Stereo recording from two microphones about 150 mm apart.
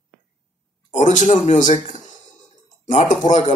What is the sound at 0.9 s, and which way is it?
A man's voice, 55° left (ahead or behind).